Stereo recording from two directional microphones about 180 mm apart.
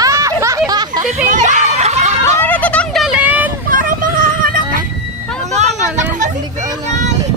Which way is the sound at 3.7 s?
50° right (ahead or behind).